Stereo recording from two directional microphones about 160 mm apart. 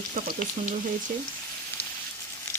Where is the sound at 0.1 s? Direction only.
50° right (ahead or behind).